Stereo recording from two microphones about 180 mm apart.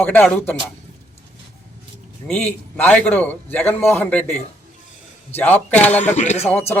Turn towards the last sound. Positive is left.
turn(degrees=10)  # may be behind; listen again after turning